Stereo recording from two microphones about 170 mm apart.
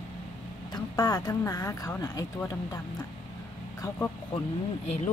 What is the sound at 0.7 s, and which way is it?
Speech, 20° left (ahead or behind).